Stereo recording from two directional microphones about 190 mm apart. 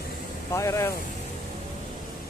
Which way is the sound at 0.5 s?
15° left (ahead or behind).